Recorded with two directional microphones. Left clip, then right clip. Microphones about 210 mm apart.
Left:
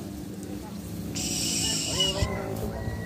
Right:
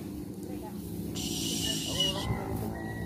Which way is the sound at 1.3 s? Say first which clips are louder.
Left 4 dB; centre (ahead or behind).